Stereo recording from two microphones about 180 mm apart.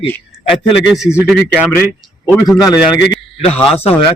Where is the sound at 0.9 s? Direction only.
5° right (ahead or behind).